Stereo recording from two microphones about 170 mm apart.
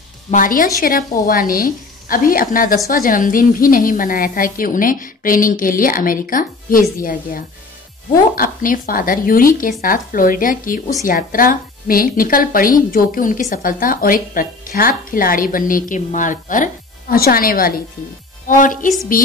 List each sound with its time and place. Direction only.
0.3 s a woman's voice: 55° left (ahead or behind)